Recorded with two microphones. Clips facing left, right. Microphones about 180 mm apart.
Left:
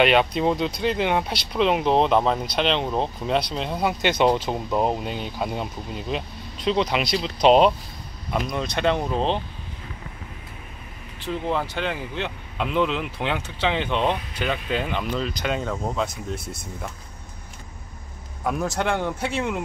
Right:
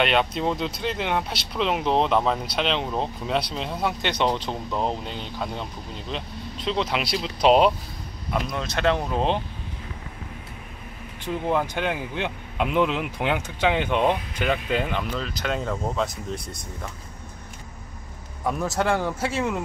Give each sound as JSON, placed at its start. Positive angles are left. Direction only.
{"t": 0.0, "sound": "speech", "side_deg": 5}
{"t": 11.2, "sound": "speech", "side_deg": -10}
{"t": 18.4, "sound": "speech", "side_deg": 0}